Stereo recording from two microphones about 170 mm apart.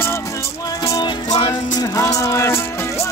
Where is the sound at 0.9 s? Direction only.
20° left (ahead or behind).